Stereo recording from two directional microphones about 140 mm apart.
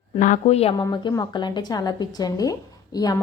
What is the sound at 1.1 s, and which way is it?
Speech, 30° left (ahead or behind).